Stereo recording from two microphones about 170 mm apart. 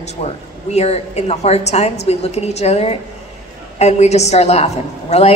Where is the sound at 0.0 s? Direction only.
40° left (ahead or behind).